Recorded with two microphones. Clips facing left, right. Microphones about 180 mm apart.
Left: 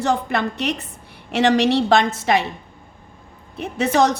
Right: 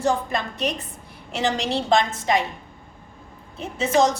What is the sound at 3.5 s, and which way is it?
Speech, 65° left (ahead or behind).